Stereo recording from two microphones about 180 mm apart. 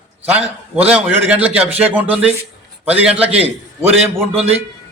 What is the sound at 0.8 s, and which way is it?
A man's voice, 10° right (ahead or behind).